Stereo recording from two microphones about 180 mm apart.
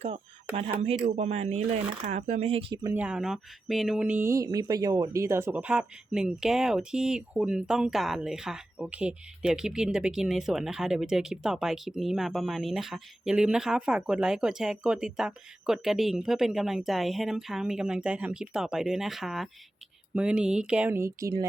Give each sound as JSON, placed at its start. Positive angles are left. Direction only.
{"t": 0.5, "sound": "speech", "side_deg": -35}
{"t": 2.7, "sound": "speech", "side_deg": -20}
{"t": 3.0, "sound": "speech", "side_deg": -5}